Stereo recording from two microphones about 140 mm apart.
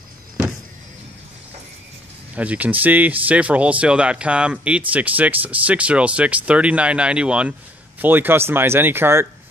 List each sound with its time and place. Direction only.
2.3 s speech: 10° right (ahead or behind)